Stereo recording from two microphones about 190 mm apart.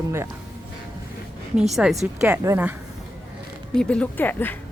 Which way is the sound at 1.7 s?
Centre (ahead or behind).